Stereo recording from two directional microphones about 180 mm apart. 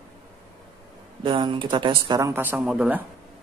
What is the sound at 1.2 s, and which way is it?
Speech, 25° right (ahead or behind).